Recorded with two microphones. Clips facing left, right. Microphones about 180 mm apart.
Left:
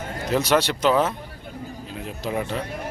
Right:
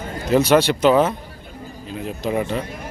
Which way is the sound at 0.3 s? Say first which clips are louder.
Right 6 dB; 5° right (ahead or behind).